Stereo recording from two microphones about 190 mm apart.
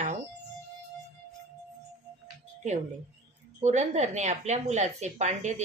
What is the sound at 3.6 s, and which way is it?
A woman's voice, 35° right (ahead or behind).